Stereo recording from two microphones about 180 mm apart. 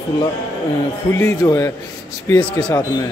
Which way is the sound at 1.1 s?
15° left (ahead or behind).